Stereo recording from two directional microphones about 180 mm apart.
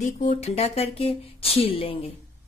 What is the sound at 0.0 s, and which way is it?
Speech, 40° left (ahead or behind).